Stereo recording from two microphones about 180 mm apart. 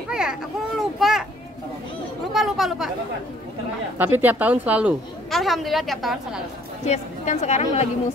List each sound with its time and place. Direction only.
0.1 s a sound: 5° right (ahead or behind)
2.3 s speech: centre (ahead or behind)
4.0 s a woman's voice: 10° right (ahead or behind)
6.9 s a woman's voice: 40° left (ahead or behind)